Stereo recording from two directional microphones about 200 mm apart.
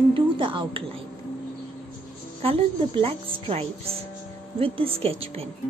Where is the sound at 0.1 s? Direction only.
25° right (ahead or behind).